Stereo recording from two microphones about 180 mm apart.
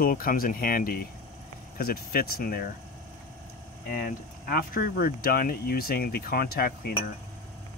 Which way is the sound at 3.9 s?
55° left (ahead or behind).